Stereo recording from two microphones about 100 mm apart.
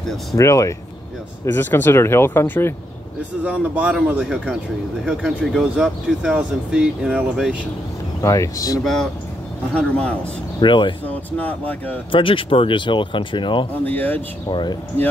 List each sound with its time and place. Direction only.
0.4 s speech: 30° left (ahead or behind)
1.4 s speech: 20° left (ahead or behind)
3.4 s speech: 15° right (ahead or behind)
8.2 s speech: 30° left (ahead or behind)
8.8 s speech: 5° left (ahead or behind)
10.6 s speech: 50° left (ahead or behind)
11.1 s speech: 15° left (ahead or behind)
12.1 s speech: 60° left (ahead or behind)
13.8 s speech: 20° left (ahead or behind)
14.5 s speech: 45° left (ahead or behind)